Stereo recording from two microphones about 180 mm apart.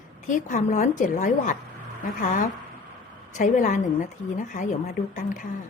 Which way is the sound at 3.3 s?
45° left (ahead or behind).